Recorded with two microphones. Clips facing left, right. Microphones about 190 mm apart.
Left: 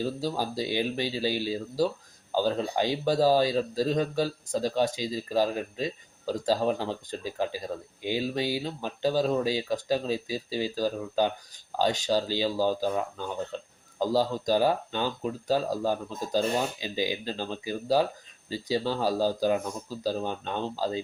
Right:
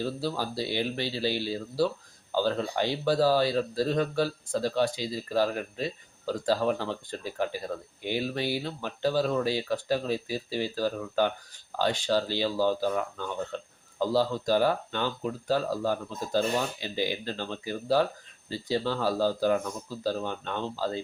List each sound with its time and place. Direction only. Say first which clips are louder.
0.0 s speech: left 1 dB; 15° left (ahead or behind)